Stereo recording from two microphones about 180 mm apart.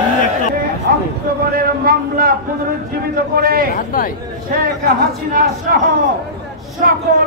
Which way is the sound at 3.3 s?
55° right (ahead or behind).